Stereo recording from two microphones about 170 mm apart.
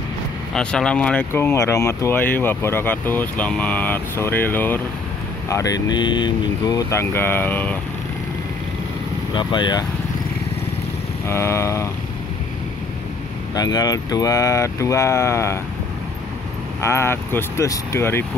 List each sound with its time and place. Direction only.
0.6 s speech: 5° left (ahead or behind)
9.3 s speech: 25° left (ahead or behind)
11.2 s speech: 15° left (ahead or behind)
13.6 s speech: 20° left (ahead or behind)
16.8 s speech: 15° left (ahead or behind)